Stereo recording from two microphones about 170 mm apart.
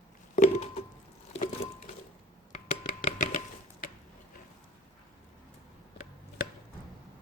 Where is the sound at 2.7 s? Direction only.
50° left (ahead or behind).